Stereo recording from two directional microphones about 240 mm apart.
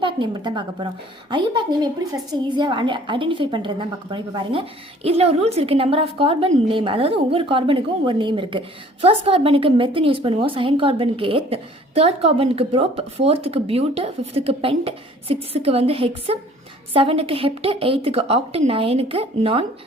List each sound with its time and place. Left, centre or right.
0.0 s a woman's voice: centre